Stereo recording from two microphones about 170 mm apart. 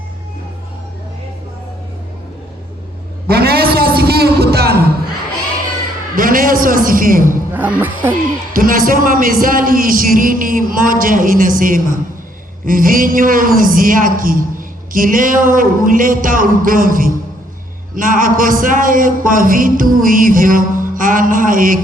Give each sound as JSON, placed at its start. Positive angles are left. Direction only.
{"t": 3.2, "sound": "a sound", "side_deg": -65}
{"t": 6.1, "sound": "a man's voice", "side_deg": -55}
{"t": 7.5, "sound": "speech", "side_deg": -10}
{"t": 8.5, "sound": "a man's voice", "side_deg": -55}